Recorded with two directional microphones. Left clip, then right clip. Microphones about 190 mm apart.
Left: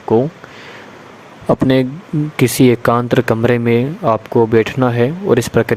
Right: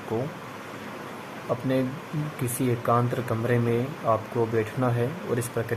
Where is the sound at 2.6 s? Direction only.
50° left (ahead or behind).